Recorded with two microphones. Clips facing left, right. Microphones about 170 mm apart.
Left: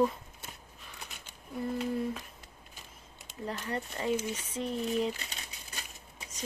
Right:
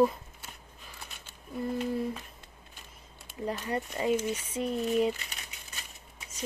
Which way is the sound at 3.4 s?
15° right (ahead or behind).